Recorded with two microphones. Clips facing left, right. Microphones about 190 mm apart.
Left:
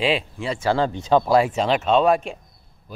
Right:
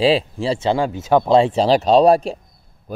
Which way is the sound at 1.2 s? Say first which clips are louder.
Right 4 dB; 25° right (ahead or behind).